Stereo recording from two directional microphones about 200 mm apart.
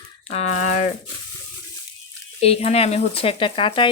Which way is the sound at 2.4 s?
30° left (ahead or behind).